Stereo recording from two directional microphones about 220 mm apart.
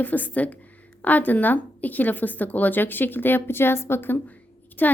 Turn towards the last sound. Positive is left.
turn(degrees=10)  # may be behind; listen again after turning